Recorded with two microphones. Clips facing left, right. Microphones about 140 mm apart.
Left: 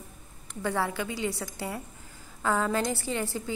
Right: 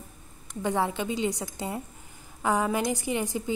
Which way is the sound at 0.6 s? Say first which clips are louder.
Right 2 dB; 20° right (ahead or behind).